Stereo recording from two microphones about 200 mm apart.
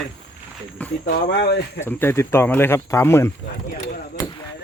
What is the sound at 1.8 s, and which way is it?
Speech, 10° left (ahead or behind).